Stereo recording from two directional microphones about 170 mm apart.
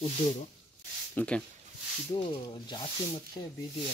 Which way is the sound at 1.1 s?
5° left (ahead or behind).